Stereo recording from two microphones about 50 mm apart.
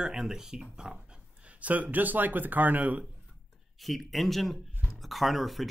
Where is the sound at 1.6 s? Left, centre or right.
Right.